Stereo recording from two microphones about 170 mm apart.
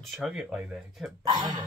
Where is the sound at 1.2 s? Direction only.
25° right (ahead or behind).